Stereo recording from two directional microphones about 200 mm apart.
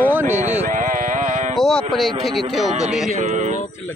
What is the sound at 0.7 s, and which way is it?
Music, 40° right (ahead or behind).